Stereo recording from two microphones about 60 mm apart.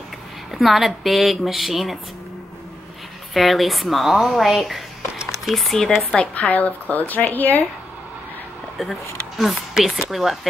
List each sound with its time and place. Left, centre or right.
0.5 s a woman's voice: centre
3.3 s a woman's voice: centre
6.1 s a woman's voice: centre
9.4 s a woman's voice: centre